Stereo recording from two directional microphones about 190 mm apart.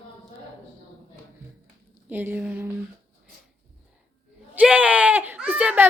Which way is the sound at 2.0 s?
10° right (ahead or behind).